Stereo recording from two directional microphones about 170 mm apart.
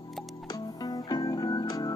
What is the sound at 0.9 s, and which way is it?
Music, 20° left (ahead or behind).